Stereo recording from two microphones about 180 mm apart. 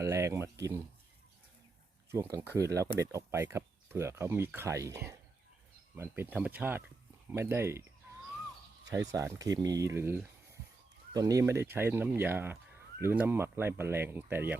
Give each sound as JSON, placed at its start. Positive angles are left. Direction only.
{"t": 0.0, "sound": "speech", "side_deg": -15}
{"t": 2.3, "sound": "speech", "side_deg": -15}
{"t": 8.9, "sound": "speech", "side_deg": -20}